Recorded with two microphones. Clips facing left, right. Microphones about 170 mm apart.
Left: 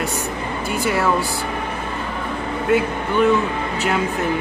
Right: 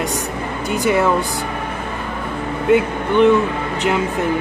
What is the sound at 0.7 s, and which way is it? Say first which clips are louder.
Speech: right 5 dB; 20° right (ahead or behind).